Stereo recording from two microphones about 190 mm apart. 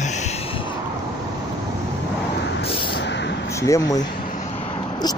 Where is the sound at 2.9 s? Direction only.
65° left (ahead or behind).